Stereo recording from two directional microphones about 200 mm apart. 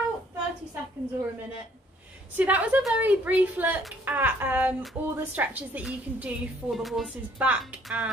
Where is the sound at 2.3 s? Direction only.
5° right (ahead or behind).